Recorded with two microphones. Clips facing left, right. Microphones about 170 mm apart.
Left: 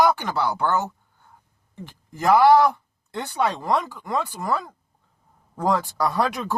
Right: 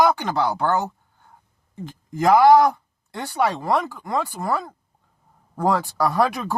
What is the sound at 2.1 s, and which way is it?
Speech, 15° right (ahead or behind).